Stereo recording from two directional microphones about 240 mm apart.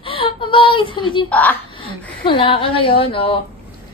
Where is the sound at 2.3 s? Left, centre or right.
Left.